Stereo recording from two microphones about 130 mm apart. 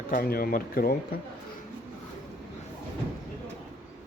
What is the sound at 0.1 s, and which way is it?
Speech, 90° left.